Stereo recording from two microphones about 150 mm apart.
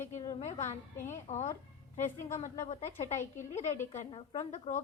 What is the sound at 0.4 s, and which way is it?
Speech, 50° left (ahead or behind).